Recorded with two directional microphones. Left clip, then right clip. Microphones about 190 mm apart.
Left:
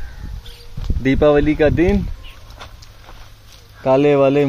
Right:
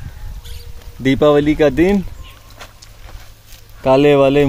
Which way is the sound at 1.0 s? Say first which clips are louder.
Right 2 dB; 15° right (ahead or behind).